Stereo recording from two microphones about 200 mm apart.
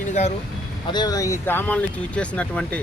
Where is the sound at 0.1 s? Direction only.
35° left (ahead or behind).